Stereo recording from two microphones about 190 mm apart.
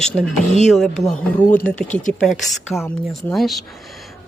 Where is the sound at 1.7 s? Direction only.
40° left (ahead or behind).